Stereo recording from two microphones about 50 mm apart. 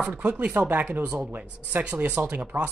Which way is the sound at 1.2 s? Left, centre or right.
Right.